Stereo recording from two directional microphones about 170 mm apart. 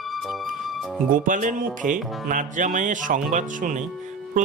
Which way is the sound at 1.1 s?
50° right (ahead or behind).